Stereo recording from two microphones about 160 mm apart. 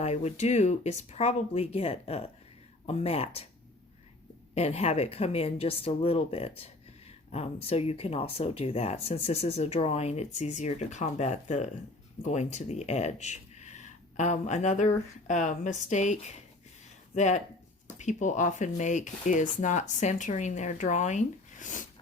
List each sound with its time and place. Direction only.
0.0 s speech: 45° left (ahead or behind)
4.5 s speech: 40° left (ahead or behind)